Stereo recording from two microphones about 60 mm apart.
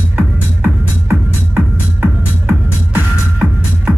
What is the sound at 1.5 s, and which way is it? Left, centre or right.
Music, right.